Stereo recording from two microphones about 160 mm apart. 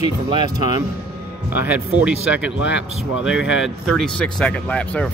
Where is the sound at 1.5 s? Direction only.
10° right (ahead or behind).